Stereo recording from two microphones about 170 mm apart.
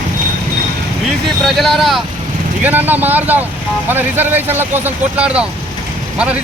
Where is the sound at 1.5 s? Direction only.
Centre (ahead or behind).